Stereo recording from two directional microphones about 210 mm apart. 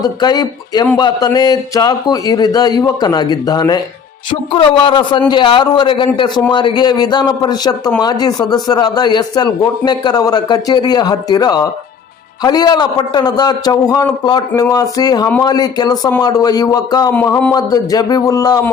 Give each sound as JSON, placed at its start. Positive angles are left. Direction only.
{"t": 0.0, "sound": "a man's voice", "side_deg": 20}
{"t": 17.2, "sound": "a man's voice", "side_deg": 10}